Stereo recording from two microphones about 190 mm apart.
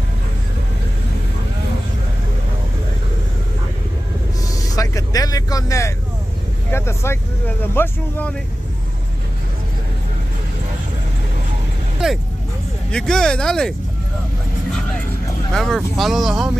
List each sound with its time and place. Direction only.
4.6 s vehicle: 20° left (ahead or behind)
12.9 s speech: 5° left (ahead or behind)
15.5 s speech: centre (ahead or behind)